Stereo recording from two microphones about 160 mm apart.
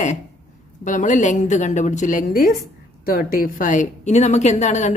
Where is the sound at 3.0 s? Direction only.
65° left (ahead or behind); by 4.9 s 45° left (ahead or behind).